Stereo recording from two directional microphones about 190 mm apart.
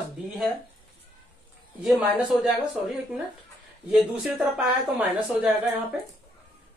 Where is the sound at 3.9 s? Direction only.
5° right (ahead or behind).